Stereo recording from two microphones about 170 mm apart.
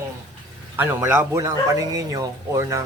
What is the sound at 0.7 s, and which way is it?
Speech, 15° right (ahead or behind).